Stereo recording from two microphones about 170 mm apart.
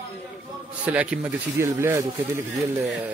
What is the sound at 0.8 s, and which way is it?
A man's voice, 10° right (ahead or behind).